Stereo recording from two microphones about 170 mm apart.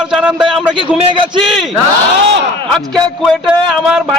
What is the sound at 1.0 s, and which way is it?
Speech, 30° right (ahead or behind).